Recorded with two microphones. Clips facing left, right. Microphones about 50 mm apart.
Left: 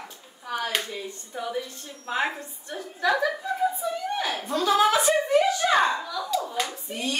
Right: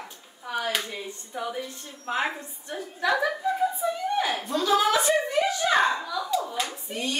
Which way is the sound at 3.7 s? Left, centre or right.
Right.